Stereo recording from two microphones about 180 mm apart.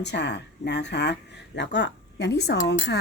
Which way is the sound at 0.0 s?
70° left (ahead or behind).